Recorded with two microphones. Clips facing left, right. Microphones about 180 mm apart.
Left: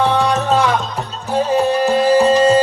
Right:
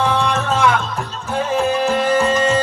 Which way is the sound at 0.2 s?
35° left (ahead or behind).